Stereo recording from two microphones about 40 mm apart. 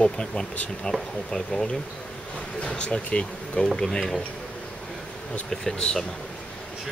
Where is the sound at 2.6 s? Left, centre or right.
Left.